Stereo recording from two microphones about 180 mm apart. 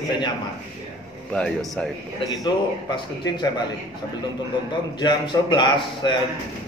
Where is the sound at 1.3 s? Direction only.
5° left (ahead or behind).